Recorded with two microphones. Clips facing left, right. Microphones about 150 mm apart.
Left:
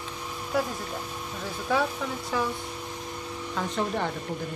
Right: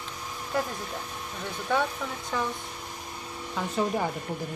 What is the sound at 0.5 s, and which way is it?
A woman's voice, centre (ahead or behind).